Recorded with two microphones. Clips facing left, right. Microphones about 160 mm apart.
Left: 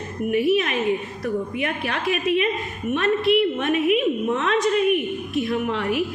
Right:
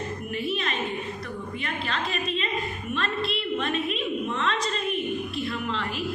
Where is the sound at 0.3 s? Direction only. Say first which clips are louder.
Left 11 dB; 70° left (ahead or behind).